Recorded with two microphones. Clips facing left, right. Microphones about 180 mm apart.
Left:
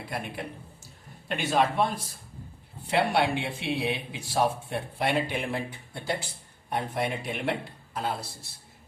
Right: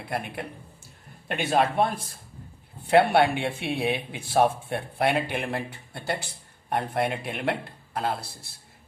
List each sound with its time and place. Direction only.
1.3 s speech: 55° right (ahead or behind)